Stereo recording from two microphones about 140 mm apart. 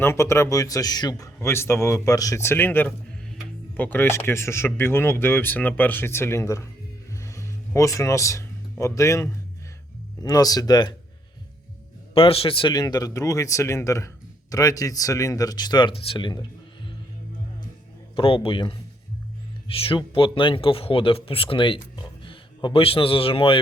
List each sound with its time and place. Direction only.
0.0 s a man's voice: 20° left (ahead or behind)
12.1 s a man's voice: 40° left (ahead or behind)
18.2 s a man's voice: 40° left (ahead or behind)